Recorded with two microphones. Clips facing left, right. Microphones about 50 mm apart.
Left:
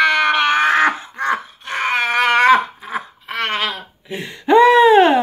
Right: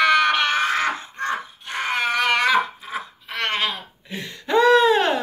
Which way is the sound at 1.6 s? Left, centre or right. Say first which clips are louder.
Left 4 dB; left.